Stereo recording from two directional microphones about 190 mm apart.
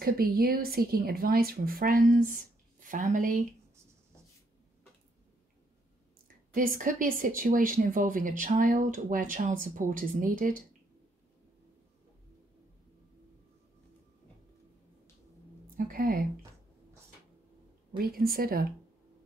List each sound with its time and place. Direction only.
0.0 s speech: 50° right (ahead or behind)
6.2 s speech: 45° right (ahead or behind)
15.7 s a woman's voice: 50° right (ahead or behind)
17.9 s speech: 50° right (ahead or behind)